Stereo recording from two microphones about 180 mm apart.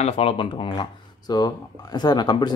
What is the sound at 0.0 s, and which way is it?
Speech, 30° left (ahead or behind).